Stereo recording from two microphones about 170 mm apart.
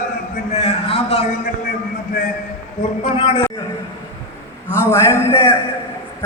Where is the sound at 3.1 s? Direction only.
30° left (ahead or behind).